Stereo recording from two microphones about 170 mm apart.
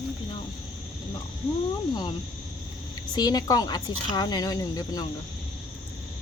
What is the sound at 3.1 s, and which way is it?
Speech, 20° left (ahead or behind).